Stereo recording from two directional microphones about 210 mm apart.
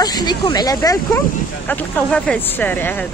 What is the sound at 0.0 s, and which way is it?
Speech, 20° left (ahead or behind).